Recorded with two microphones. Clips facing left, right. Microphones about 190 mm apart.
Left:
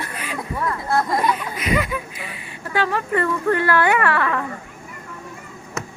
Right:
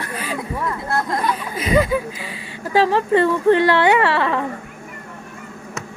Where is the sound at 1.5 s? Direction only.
30° right (ahead or behind).